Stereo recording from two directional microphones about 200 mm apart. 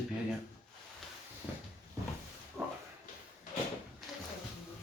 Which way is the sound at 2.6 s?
10° right (ahead or behind).